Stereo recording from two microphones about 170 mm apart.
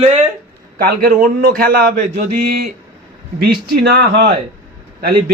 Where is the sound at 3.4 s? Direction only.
65° right (ahead or behind).